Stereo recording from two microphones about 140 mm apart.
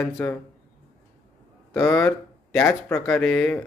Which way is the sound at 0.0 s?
10° left (ahead or behind).